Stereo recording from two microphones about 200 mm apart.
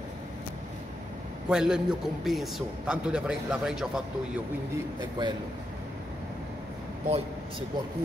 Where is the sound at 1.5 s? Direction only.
5° right (ahead or behind).